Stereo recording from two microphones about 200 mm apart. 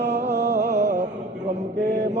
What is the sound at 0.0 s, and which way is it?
Music, 60° right (ahead or behind).